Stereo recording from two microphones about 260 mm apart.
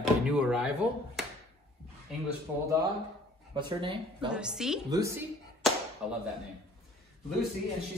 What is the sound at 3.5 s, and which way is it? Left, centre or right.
Speech, centre.